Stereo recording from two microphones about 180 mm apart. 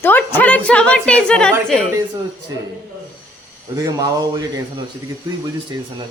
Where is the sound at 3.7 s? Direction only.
20° right (ahead or behind).